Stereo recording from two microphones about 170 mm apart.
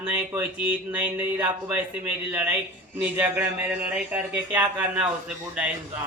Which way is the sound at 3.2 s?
10° right (ahead or behind).